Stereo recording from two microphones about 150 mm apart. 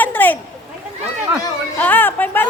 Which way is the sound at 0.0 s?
10° left (ahead or behind).